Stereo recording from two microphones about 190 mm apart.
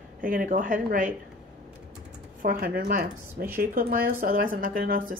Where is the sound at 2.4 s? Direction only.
50° right (ahead or behind).